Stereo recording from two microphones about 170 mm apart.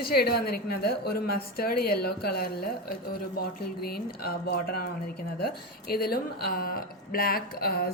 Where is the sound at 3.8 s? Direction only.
65° left (ahead or behind).